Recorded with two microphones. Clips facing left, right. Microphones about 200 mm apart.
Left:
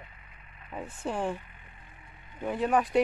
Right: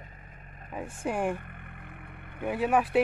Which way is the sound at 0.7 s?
10° right (ahead or behind).